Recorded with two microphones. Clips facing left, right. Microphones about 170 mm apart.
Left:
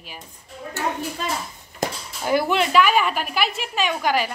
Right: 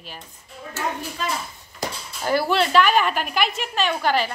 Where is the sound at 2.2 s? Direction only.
15° left (ahead or behind).